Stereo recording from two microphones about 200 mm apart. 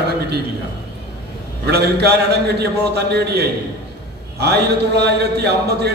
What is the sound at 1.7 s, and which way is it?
Speech, 55° right (ahead or behind).